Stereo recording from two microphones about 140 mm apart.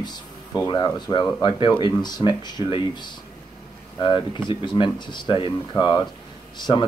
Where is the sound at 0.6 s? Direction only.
30° left (ahead or behind).